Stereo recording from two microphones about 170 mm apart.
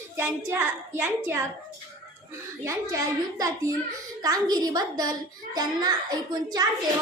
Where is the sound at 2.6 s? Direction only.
20° right (ahead or behind).